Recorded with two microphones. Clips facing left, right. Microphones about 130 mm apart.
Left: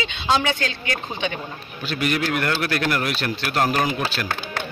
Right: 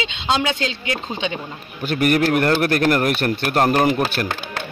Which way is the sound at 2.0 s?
50° right (ahead or behind).